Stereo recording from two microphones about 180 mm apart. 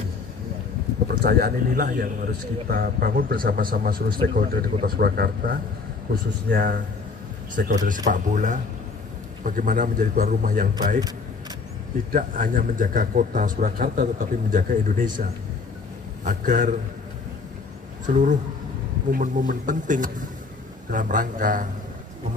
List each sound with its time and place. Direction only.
1.0 s a man's voice: 60° right (ahead or behind)
6.5 s a man's voice: 65° right (ahead or behind)
7.5 s a man's voice: 45° right (ahead or behind)
12.1 s a man's voice: 50° right (ahead or behind)
16.3 s a man's voice: 45° right (ahead or behind)
18.0 s a man's voice: 45° right (ahead or behind)